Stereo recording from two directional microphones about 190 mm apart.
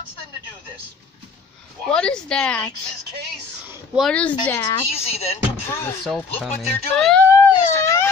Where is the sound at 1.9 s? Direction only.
5° left (ahead or behind).